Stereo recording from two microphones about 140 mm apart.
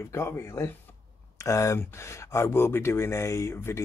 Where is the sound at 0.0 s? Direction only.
20° left (ahead or behind).